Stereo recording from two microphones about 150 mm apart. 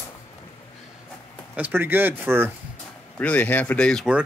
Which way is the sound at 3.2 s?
10° left (ahead or behind).